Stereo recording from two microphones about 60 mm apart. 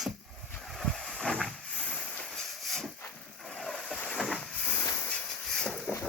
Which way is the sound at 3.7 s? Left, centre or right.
Centre.